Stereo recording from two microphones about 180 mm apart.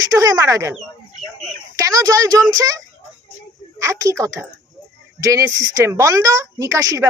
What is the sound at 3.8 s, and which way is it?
A man's voice, 15° right (ahead or behind).